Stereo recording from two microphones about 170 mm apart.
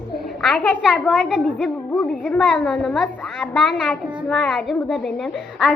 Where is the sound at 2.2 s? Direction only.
5° left (ahead or behind).